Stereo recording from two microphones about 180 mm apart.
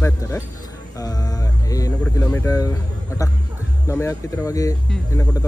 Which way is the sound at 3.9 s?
15° left (ahead or behind).